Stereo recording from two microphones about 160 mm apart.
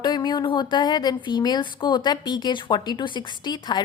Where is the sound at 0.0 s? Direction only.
25° left (ahead or behind).